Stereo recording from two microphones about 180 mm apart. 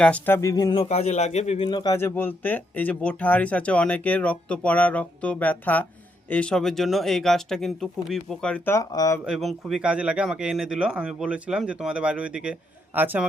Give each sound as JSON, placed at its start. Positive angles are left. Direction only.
{"t": 0.0, "sound": "a man's voice", "side_deg": 10}
{"t": 0.9, "sound": "a man's voice", "side_deg": 40}
{"t": 9.2, "sound": "speech", "side_deg": 0}